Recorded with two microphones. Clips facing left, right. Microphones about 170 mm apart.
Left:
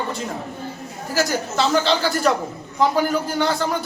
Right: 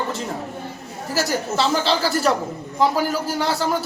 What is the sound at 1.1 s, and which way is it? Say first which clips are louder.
A man's voice: even; centre (ahead or behind).